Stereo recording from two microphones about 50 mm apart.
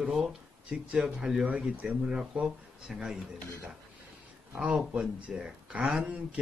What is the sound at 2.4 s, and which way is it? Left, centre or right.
Speech, centre.